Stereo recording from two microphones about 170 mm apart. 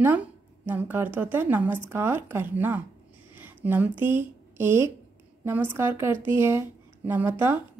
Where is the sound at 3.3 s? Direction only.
10° right (ahead or behind).